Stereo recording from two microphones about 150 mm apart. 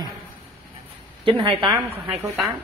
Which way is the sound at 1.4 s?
35° right (ahead or behind).